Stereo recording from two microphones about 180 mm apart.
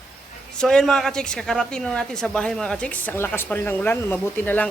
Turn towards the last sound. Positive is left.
turn(degrees=10)  # may be behind; listen again after turning